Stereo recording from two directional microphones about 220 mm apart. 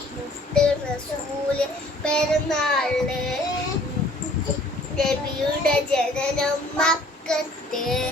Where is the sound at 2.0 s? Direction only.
5° left (ahead or behind).